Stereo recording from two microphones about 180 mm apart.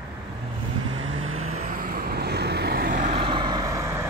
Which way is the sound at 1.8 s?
55° right (ahead or behind).